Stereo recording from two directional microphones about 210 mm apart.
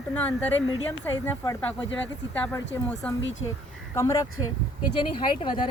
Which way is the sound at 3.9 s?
15° left (ahead or behind).